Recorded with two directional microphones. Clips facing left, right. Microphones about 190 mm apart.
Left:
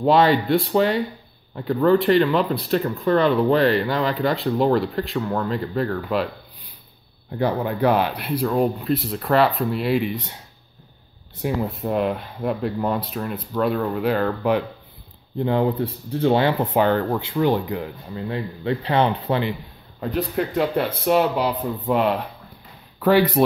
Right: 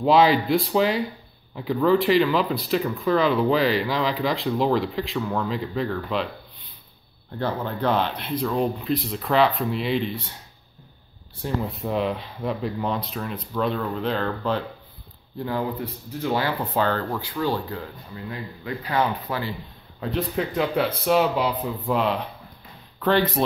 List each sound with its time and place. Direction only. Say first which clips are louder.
0.0 s speech: left 1 dB; centre (ahead or behind)
7.3 s speech: left 5 dB; 10° left (ahead or behind)
11.4 s speech: left 3 dB; 5° left (ahead or behind)
15.3 s speech: left 7 dB; 25° left (ahead or behind)
18.1 s speech: left 7 dB; 30° left (ahead or behind)
20.0 s speech: left 2 dB; centre (ahead or behind)